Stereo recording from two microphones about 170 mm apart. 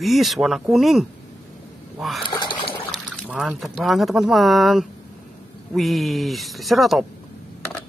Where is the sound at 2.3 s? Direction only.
25° left (ahead or behind).